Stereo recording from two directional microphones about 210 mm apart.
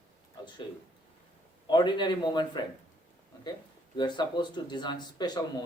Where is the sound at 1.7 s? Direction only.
20° left (ahead or behind).